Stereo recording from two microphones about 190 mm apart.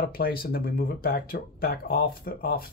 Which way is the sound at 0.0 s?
50° left (ahead or behind).